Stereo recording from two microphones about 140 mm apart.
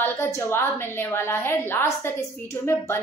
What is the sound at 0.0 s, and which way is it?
A woman's voice, 20° left (ahead or behind).